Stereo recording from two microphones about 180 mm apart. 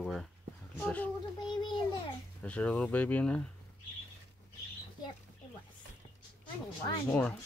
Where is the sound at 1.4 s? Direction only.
25° left (ahead or behind).